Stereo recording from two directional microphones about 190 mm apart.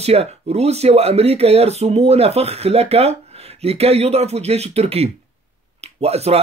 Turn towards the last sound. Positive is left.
turn(degrees=-35)  # may be behind; listen again after turning